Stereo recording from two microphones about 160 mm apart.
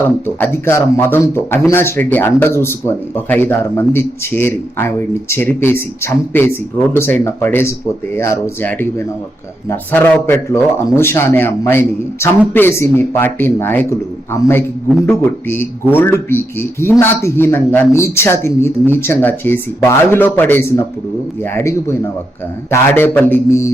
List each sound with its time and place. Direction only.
0.3 s speech: 15° left (ahead or behind)